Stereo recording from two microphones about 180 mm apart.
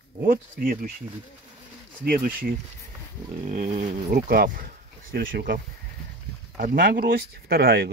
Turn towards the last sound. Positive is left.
turn(degrees=-65)  # may be behind; listen again after turning